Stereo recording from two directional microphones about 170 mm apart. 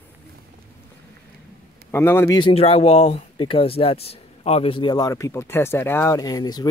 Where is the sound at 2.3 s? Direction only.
30° left (ahead or behind).